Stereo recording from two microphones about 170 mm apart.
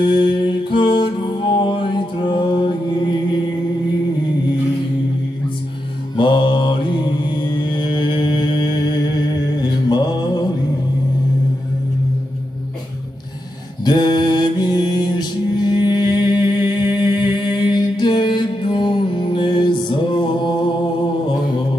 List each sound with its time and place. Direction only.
0.0 s music: 30° left (ahead or behind)
6.1 s mantra: 30° left (ahead or behind)
13.8 s mantra: 25° left (ahead or behind)
16.9 s music: 25° left (ahead or behind)